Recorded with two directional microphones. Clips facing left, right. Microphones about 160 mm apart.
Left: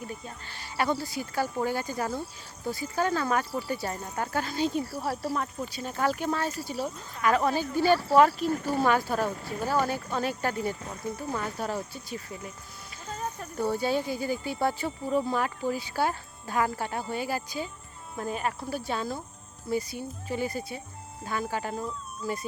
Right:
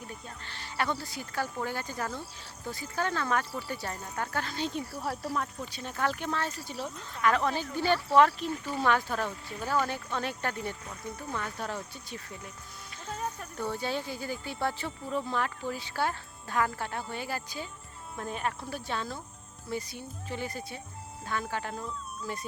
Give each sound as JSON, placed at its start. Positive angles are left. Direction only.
{"t": 0.4, "sound": "speech", "side_deg": 10}
{"t": 8.4, "sound": "speech", "side_deg": 45}
{"t": 8.8, "sound": "speech", "side_deg": 10}
{"t": 9.2, "sound": "speech", "side_deg": 40}
{"t": 9.8, "sound": "speech", "side_deg": 5}
{"t": 13.6, "sound": "speech", "side_deg": 10}